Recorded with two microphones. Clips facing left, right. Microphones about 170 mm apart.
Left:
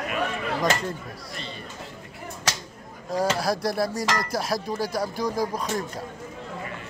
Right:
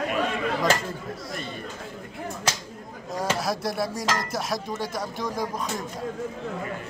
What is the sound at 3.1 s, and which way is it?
Speech, centre (ahead or behind).